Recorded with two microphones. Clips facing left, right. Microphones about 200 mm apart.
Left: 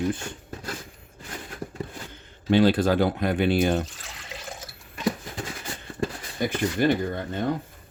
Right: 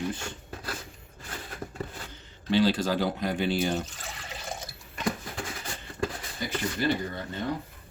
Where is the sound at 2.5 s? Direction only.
55° left (ahead or behind).